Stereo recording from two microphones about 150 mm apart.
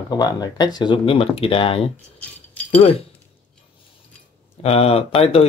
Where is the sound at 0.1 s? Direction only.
25° left (ahead or behind).